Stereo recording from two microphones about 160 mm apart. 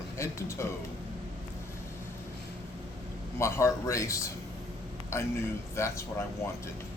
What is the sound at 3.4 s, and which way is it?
Speech, 20° left (ahead or behind).